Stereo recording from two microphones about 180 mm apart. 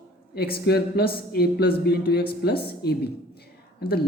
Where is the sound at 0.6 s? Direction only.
60° left (ahead or behind).